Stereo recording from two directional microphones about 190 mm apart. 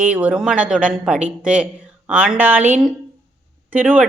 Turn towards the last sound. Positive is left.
turn(degrees=-10)  # may be behind; listen again after turning